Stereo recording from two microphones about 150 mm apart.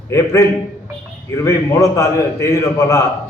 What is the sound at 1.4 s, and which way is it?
A man's voice, 20° left (ahead or behind).